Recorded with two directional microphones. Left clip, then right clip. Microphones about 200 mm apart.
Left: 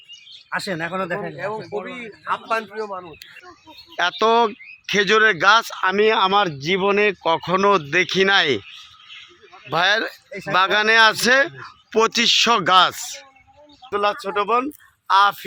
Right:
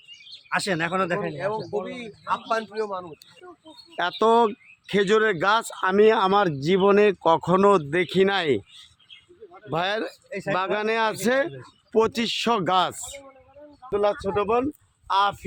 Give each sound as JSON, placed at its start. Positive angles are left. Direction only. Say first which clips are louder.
{"t": 0.5, "sound": "speech", "louder": "even", "side_deg": -30}
{"t": 2.0, "sound": "a man's voice", "louder": "left 2 dB", "side_deg": 35}
{"t": 4.2, "sound": "speech", "louder": "left 1 dB", "side_deg": -25}
{"t": 5.8, "sound": "speech", "louder": "left 2 dB", "side_deg": -30}
{"t": 7.8, "sound": "speech", "louder": "left 4 dB", "side_deg": -10}
{"t": 9.6, "sound": "speech", "louder": "left 7 dB", "side_deg": 0}
{"t": 13.9, "sound": "speech", "louder": "left 2 dB", "side_deg": 5}